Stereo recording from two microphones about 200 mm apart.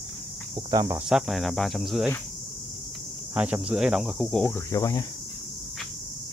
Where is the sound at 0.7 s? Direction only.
20° right (ahead or behind).